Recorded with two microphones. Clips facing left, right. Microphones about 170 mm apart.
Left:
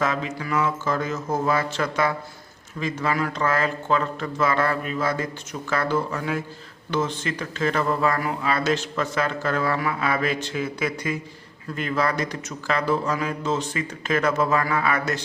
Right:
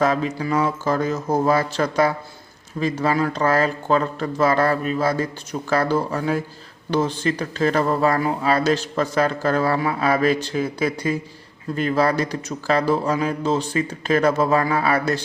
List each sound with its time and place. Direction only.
0.0 s speech: 35° right (ahead or behind)